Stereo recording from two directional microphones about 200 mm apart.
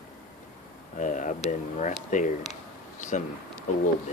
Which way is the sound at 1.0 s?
40° left (ahead or behind).